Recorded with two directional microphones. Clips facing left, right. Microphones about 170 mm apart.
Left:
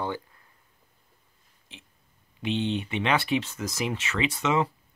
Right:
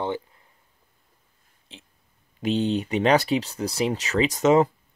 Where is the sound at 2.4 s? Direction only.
40° right (ahead or behind).